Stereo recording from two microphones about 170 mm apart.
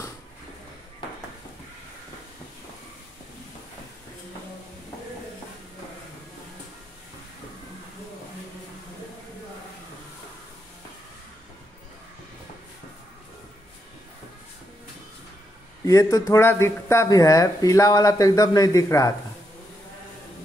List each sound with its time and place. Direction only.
15.8 s speech: 20° left (ahead or behind)